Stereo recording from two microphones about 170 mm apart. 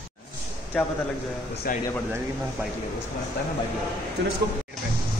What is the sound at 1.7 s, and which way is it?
Speech, 55° left (ahead or behind).